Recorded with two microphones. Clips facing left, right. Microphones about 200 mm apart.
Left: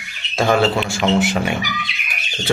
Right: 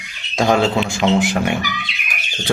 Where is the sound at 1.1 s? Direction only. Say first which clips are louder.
Left 2 dB; 15° right (ahead or behind).